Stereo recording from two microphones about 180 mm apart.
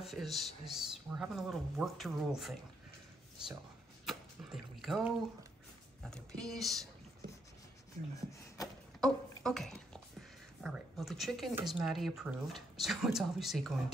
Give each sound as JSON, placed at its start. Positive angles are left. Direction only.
{"t": 0.0, "sound": "speech", "side_deg": 0}
{"t": 4.0, "sound": "a sound", "side_deg": 0}
{"t": 6.0, "sound": "speech", "side_deg": 5}
{"t": 8.2, "sound": "speech", "side_deg": 20}
{"t": 9.0, "sound": "a sound", "side_deg": 0}
{"t": 10.6, "sound": "speech", "side_deg": 0}